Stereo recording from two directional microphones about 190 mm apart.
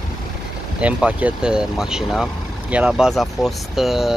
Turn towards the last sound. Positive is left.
turn(degrees=0)  # may be behind; listen again after turning